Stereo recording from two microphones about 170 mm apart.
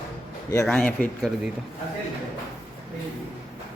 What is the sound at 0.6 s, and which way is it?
Speech, 5° left (ahead or behind).